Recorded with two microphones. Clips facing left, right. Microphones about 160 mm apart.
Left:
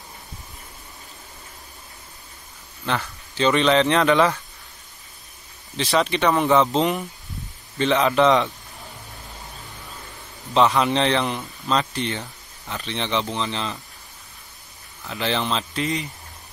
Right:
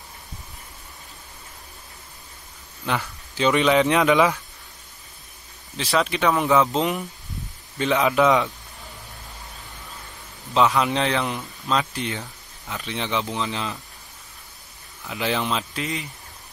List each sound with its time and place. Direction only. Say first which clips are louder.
3.0 s speech: left 1 dB; 10° right (ahead or behind)
5.8 s a man's voice: left 2 dB; centre (ahead or behind)
10.5 s a man's voice: left 1 dB; 5° right (ahead or behind)
15.0 s speech: even; 10° right (ahead or behind)